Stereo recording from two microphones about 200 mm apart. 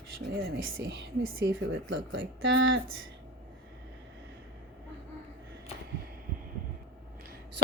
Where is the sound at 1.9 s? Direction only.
70° right (ahead or behind).